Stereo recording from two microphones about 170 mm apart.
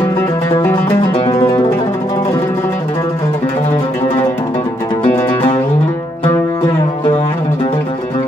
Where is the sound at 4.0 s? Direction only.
15° left (ahead or behind).